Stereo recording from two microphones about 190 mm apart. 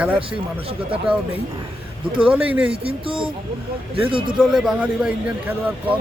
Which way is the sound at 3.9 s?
30° right (ahead or behind).